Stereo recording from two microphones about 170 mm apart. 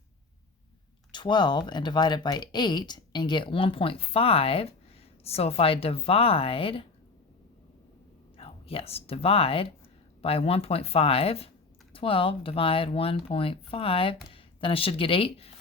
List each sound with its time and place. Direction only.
1.1 s speech: 25° left (ahead or behind)
8.4 s speech: 35° left (ahead or behind)